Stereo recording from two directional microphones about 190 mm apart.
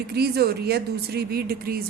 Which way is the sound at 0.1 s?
60° right (ahead or behind).